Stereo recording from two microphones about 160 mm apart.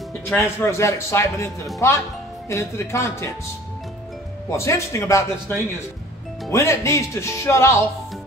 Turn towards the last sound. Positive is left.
turn(degrees=15)  # may be behind; listen again after turning